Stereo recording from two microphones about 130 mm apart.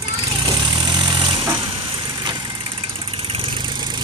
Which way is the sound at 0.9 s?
35° right (ahead or behind).